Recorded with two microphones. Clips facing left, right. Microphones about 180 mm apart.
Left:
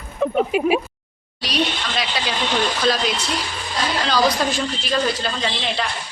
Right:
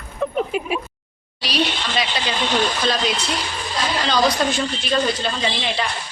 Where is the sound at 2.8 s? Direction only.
Centre (ahead or behind).